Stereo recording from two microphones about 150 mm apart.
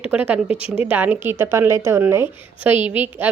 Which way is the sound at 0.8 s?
10° right (ahead or behind).